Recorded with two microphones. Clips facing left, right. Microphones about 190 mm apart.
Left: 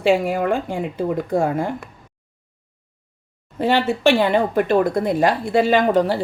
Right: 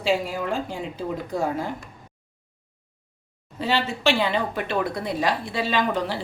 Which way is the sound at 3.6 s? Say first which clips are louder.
Left 7 dB; 55° left (ahead or behind).